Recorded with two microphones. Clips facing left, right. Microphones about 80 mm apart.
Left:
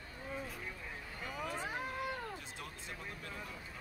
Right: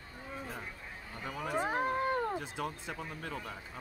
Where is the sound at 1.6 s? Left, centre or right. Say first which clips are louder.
Right 8 dB; right.